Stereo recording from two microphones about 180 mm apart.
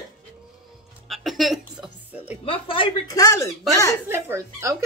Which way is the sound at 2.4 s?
30° left (ahead or behind).